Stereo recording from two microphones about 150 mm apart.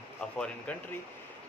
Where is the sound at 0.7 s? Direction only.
10° left (ahead or behind).